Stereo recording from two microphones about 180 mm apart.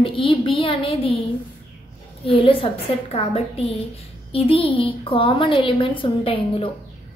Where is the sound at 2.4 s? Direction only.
30° left (ahead or behind).